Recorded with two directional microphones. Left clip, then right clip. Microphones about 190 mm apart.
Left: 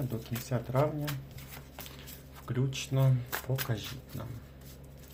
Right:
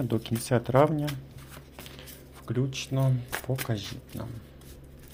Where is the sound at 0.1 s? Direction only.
50° right (ahead or behind).